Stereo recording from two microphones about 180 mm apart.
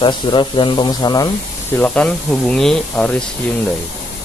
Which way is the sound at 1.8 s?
5° left (ahead or behind).